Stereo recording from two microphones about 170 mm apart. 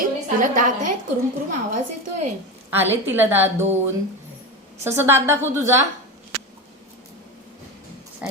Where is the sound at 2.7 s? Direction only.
10° right (ahead or behind).